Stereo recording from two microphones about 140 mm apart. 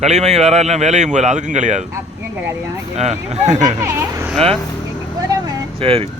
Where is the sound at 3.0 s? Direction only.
50° right (ahead or behind).